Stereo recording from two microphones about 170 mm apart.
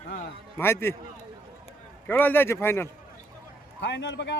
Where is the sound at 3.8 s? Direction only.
90° left.